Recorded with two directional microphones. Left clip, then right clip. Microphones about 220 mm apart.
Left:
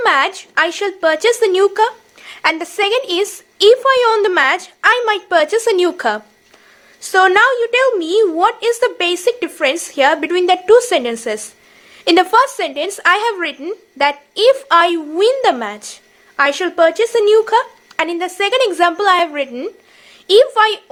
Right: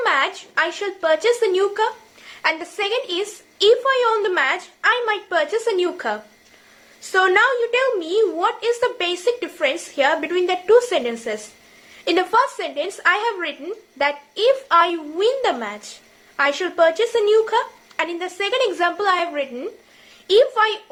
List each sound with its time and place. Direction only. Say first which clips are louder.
0.0 s speech: left 5 dB; 45° left (ahead or behind)